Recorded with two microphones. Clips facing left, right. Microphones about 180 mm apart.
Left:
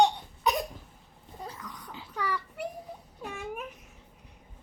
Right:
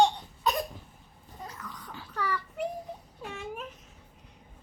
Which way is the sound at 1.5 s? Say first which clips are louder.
Even; 15° left (ahead or behind).